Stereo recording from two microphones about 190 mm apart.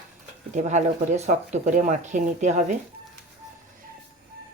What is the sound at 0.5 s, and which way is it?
Speech, 40° right (ahead or behind).